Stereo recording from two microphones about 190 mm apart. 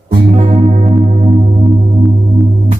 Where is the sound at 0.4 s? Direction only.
40° right (ahead or behind).